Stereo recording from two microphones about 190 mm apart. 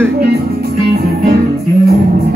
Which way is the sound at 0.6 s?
55° right (ahead or behind).